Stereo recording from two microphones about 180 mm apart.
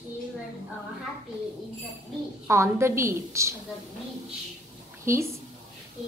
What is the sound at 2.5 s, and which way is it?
A woman's voice, 15° right (ahead or behind).